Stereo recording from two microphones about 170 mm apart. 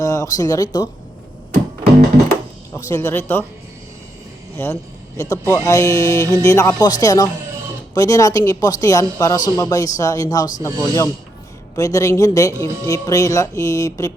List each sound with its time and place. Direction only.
0.0 s a woman's voice: 20° left (ahead or behind)
2.9 s speech: 15° left (ahead or behind)
4.5 s a woman's voice: 15° left (ahead or behind)